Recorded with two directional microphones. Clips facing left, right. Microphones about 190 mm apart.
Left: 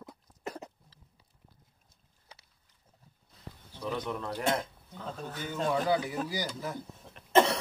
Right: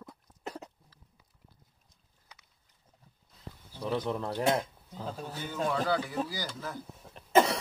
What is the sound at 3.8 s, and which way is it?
Speech, 30° right (ahead or behind).